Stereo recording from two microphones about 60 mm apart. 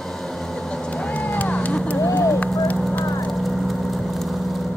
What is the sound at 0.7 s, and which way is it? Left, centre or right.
Vehicle, centre.